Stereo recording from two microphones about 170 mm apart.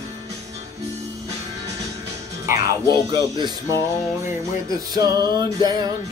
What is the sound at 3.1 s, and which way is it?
Speech, 25° right (ahead or behind).